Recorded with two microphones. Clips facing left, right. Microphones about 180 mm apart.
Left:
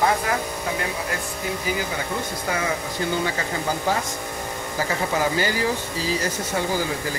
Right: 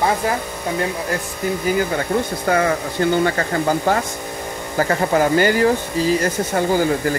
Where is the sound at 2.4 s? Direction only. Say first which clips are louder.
Right 7 dB; 60° right (ahead or behind).